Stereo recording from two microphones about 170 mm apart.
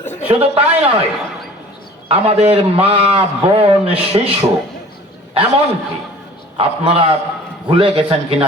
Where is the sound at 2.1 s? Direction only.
35° right (ahead or behind).